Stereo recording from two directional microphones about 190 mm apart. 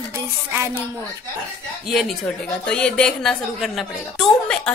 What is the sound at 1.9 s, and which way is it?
A woman's voice, centre (ahead or behind).